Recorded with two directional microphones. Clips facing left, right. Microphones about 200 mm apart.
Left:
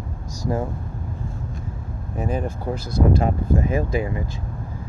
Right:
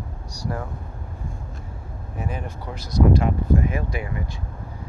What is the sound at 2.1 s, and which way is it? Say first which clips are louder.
Speech: left 6 dB; 35° left (ahead or behind).